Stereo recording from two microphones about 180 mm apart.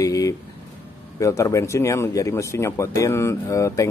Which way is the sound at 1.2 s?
15° left (ahead or behind).